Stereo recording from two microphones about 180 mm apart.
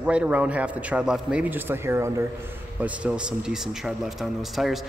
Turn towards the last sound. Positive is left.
turn(degrees=0)  # may be behind; listen again after turning